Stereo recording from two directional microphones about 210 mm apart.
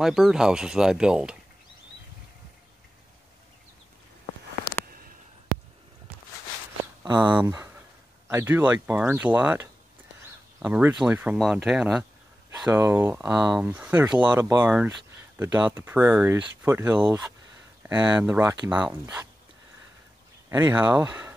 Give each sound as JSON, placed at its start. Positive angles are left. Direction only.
{"t": 0.0, "sound": "speech", "side_deg": 0}
{"t": 6.8, "sound": "a sound", "side_deg": -15}
{"t": 7.3, "sound": "speech", "side_deg": -10}
{"t": 20.4, "sound": "speech", "side_deg": -10}